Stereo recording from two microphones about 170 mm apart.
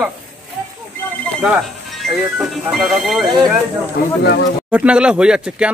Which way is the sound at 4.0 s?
65° left (ahead or behind).